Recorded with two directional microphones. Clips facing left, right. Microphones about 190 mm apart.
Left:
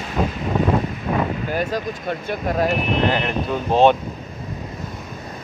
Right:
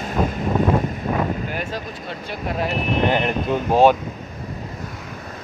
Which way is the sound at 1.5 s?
40° left (ahead or behind).